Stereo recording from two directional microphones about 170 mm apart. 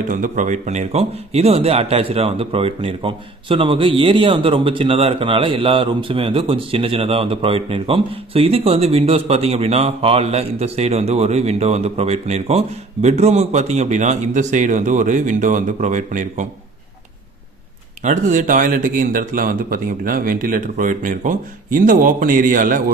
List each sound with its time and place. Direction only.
0.1 s speech: 50° right (ahead or behind)
18.0 s a man's voice: 45° right (ahead or behind)